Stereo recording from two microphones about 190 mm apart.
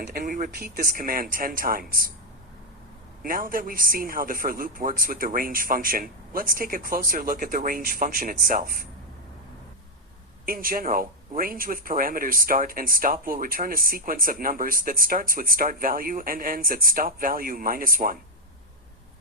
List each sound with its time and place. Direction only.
0.0 s speech: 50° right (ahead or behind)
3.2 s speech: 50° right (ahead or behind)
10.4 s speech: 50° right (ahead or behind)